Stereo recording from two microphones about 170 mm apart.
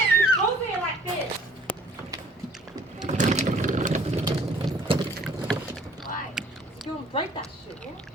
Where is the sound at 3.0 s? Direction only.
45° right (ahead or behind).